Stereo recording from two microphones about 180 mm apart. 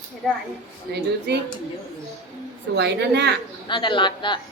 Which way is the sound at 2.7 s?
70° right (ahead or behind).